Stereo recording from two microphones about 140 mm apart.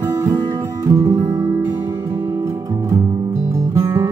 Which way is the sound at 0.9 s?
25° right (ahead or behind).